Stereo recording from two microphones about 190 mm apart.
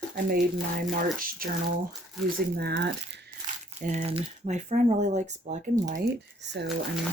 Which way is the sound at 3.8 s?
35° right (ahead or behind).